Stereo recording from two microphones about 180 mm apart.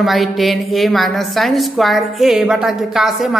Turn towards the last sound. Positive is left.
turn(degrees=0)  # may be behind; listen again after turning